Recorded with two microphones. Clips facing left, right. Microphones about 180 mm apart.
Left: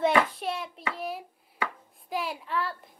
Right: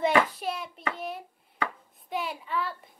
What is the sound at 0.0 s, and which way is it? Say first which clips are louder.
Hands: even; centre (ahead or behind).